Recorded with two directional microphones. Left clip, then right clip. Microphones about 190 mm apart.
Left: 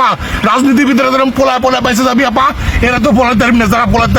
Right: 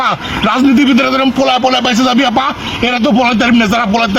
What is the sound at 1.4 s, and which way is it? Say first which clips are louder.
Speech: left 1 dB; 15° left (ahead or behind).